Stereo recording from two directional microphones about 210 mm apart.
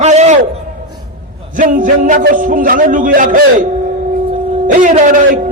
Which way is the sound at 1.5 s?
40° right (ahead or behind).